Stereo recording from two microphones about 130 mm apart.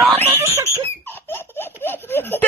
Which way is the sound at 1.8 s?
15° left (ahead or behind).